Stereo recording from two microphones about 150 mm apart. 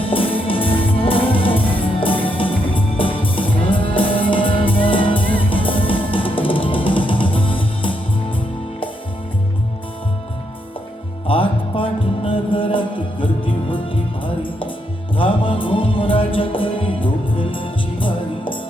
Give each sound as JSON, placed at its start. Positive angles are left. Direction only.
{"t": 0.0, "sound": "music", "side_deg": 35}
{"t": 11.3, "sound": "music", "side_deg": 35}